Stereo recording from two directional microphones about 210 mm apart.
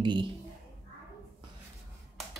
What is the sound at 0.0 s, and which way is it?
Speech, 25° right (ahead or behind).